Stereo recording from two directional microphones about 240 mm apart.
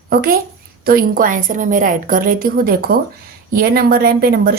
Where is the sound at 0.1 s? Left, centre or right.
Right.